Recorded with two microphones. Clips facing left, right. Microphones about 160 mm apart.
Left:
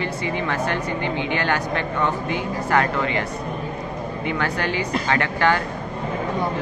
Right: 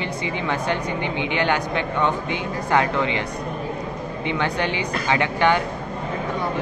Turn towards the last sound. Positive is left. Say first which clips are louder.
# right 1 dB
turn(degrees=-20)  # may be behind; listen again after turning